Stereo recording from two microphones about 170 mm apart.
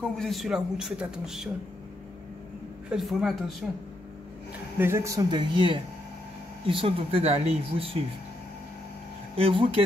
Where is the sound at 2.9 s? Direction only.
Centre (ahead or behind).